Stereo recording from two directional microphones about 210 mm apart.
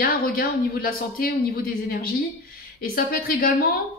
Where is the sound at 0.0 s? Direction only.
45° left (ahead or behind).